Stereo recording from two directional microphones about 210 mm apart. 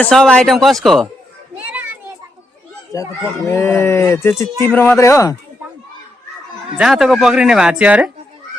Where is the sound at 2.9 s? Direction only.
15° left (ahead or behind).